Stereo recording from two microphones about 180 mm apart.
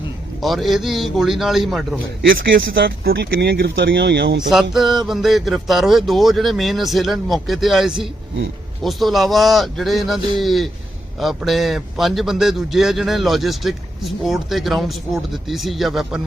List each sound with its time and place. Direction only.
0.4 s a man's voice: centre (ahead or behind)
2.4 s speech: 85° right
4.4 s a man's voice: centre (ahead or behind)